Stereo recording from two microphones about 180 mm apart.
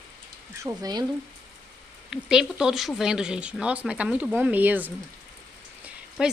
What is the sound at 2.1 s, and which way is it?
A woman's voice, 5° right (ahead or behind).